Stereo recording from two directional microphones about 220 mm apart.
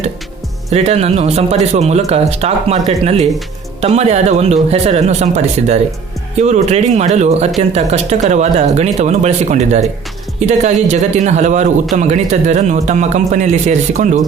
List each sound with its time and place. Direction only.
0.7 s speech: 30° right (ahead or behind)